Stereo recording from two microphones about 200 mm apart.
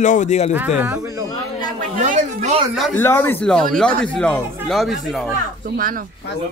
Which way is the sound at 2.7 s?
Centre (ahead or behind).